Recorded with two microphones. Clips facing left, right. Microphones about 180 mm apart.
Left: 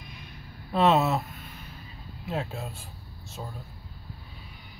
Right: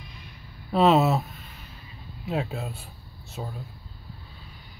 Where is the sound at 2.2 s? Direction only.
5° right (ahead or behind).